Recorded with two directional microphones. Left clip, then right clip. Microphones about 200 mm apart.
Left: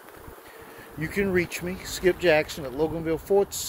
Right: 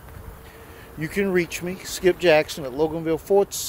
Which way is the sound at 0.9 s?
30° right (ahead or behind).